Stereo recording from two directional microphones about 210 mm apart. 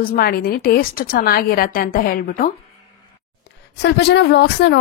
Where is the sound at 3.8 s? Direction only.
55° left (ahead or behind).